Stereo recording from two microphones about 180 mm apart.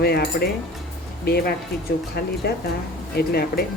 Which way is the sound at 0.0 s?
60° left (ahead or behind).